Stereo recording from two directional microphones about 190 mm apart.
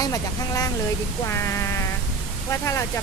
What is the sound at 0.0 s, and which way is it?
Speech, 20° left (ahead or behind).